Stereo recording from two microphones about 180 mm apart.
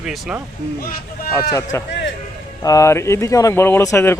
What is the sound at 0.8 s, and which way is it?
Speech, 55° left (ahead or behind).